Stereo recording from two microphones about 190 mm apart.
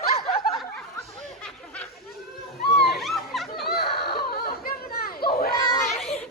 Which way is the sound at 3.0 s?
Centre (ahead or behind).